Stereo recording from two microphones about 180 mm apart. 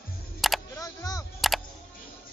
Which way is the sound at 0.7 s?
20° left (ahead or behind).